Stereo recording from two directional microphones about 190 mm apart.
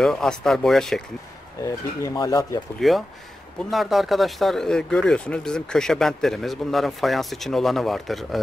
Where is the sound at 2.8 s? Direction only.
Centre (ahead or behind).